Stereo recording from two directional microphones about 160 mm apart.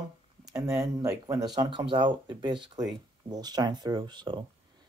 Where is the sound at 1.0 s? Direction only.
20° right (ahead or behind).